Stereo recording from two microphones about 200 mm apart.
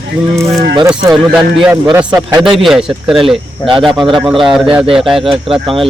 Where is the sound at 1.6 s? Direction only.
5° right (ahead or behind).